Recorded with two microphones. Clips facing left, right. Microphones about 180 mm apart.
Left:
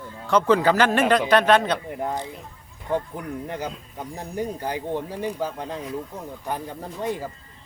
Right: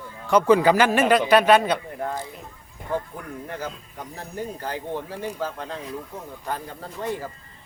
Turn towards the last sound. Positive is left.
turn(degrees=15)  # may be behind; listen again after turning